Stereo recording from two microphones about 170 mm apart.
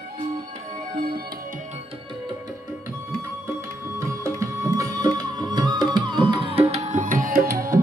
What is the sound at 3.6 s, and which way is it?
Music, 15° right (ahead or behind).